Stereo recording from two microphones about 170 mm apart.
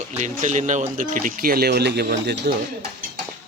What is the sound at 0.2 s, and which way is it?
Speech, 45° right (ahead or behind).